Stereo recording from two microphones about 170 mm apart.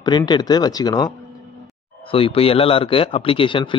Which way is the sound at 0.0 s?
25° left (ahead or behind).